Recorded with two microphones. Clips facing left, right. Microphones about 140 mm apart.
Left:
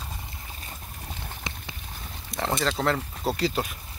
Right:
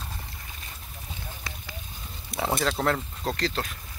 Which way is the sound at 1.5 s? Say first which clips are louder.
Left 5 dB; 20° left (ahead or behind).